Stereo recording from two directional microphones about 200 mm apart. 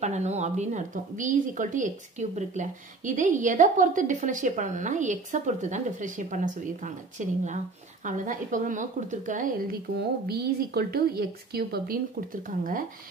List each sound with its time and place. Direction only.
0.0 s a woman's voice: 35° right (ahead or behind)
10.2 s a woman's voice: 55° right (ahead or behind)